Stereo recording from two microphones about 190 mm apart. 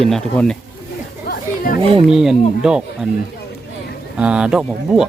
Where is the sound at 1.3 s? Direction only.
50° left (ahead or behind).